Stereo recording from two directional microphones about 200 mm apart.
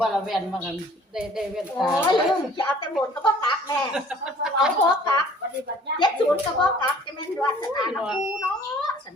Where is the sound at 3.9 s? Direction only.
5° right (ahead or behind).